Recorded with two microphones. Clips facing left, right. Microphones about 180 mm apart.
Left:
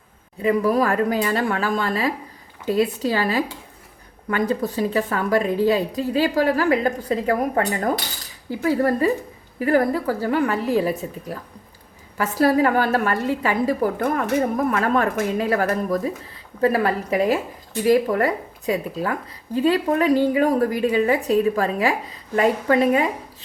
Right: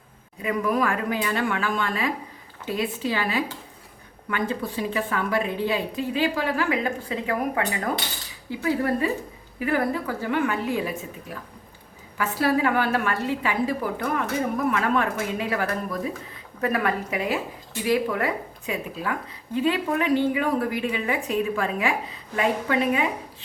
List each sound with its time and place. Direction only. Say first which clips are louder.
0.4 s a woman's voice: left 5 dB; 35° left (ahead or behind)
16.6 s a woman's voice: left 5 dB; 30° left (ahead or behind)